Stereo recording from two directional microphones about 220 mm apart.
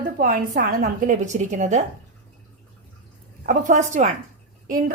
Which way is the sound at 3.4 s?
35° right (ahead or behind).